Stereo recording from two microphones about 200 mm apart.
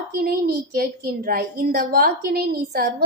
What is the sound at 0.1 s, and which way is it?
A woman's voice, 50° right (ahead or behind).